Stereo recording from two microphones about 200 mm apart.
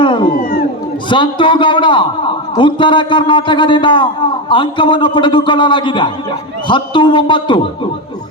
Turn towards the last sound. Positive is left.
turn(degrees=25)  # may be behind; listen again after turning